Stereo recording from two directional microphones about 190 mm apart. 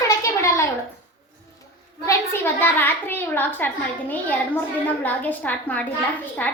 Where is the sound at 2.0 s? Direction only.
10° left (ahead or behind).